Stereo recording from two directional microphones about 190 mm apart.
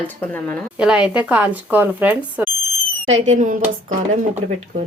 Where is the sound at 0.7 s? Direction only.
5° right (ahead or behind).